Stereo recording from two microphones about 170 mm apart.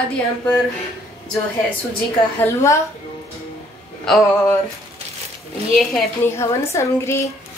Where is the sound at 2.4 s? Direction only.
15° left (ahead or behind).